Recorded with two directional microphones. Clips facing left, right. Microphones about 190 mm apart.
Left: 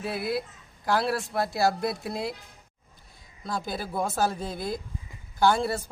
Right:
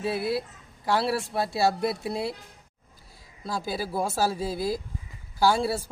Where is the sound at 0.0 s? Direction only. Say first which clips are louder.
Right 2 dB; 30° right (ahead or behind).